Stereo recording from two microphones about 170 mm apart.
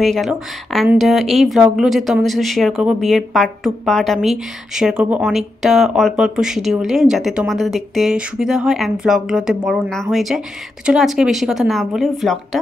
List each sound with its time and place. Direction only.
0.0 s speech: centre (ahead or behind)